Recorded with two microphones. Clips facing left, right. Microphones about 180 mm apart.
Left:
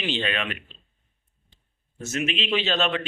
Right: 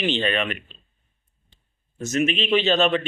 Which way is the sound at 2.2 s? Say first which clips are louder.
Right 4 dB; 40° right (ahead or behind).